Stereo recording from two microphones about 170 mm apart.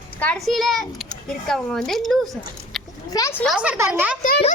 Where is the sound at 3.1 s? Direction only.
15° left (ahead or behind).